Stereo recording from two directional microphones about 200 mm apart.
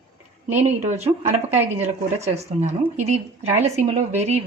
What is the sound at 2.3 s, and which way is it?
Speech, 35° right (ahead or behind).